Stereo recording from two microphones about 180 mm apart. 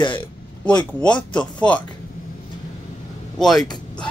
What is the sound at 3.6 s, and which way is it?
Speech, 25° left (ahead or behind).